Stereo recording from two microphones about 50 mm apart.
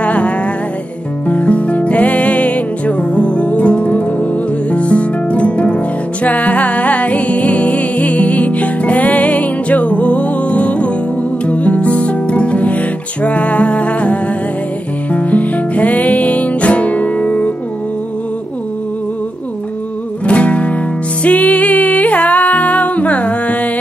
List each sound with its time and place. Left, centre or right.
0.0 s music: left
15.1 s music: left
20.2 s music: left